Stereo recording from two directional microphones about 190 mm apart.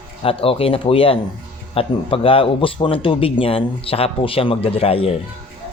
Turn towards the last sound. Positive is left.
turn(degrees=30)  # may be behind; listen again after turning